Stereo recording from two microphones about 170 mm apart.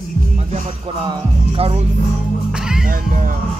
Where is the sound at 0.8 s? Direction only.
30° right (ahead or behind).